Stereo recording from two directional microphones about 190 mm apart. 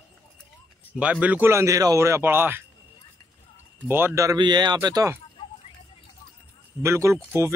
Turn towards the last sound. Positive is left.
turn(degrees=-15)  # may be behind; listen again after turning